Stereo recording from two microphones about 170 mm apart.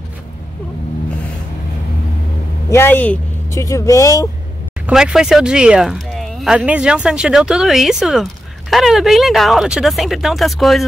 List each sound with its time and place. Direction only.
2.7 s speech: 15° left (ahead or behind)
4.8 s speech: 5° right (ahead or behind)